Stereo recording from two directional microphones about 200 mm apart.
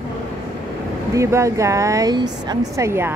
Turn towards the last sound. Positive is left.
turn(degrees=-15)  # may be behind; listen again after turning